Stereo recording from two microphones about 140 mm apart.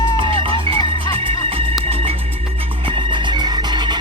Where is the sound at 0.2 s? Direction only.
40° right (ahead or behind).